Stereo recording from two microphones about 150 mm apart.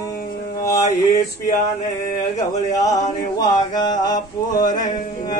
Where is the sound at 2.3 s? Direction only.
25° left (ahead or behind).